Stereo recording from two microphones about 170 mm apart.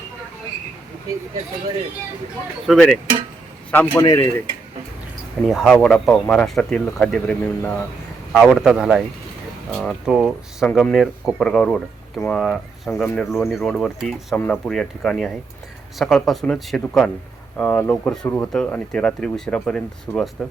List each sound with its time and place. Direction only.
2.6 s speech: 5° left (ahead or behind)
4.0 s cutlery: 20° left (ahead or behind)
5.5 s speech: centre (ahead or behind)
8.3 s speech: centre (ahead or behind)